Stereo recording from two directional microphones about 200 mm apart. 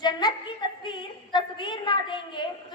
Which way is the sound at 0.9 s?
20° left (ahead or behind).